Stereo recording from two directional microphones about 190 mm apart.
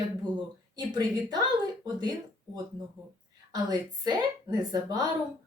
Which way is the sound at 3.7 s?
20° right (ahead or behind).